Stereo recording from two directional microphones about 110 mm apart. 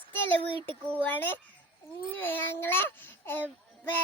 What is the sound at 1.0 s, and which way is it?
A child's voice, 15° left (ahead or behind).